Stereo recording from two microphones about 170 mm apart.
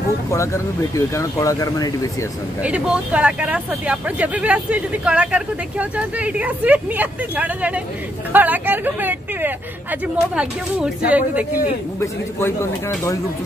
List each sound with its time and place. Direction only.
0.3 s speech: 15° left (ahead or behind)
2.6 s speech: 5° right (ahead or behind)
12.0 s speech: 15° left (ahead or behind)